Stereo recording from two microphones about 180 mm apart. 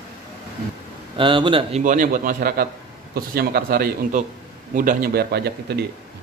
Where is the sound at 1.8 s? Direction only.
45° right (ahead or behind); by 5.8 s 65° right (ahead or behind).